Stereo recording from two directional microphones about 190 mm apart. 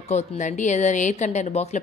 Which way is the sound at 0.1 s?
40° left (ahead or behind).